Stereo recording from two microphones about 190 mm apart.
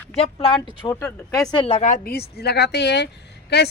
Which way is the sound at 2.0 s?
55° left (ahead or behind).